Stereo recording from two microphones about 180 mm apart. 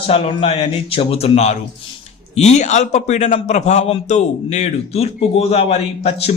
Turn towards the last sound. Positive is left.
turn(degrees=35)  # may be behind; listen again after turning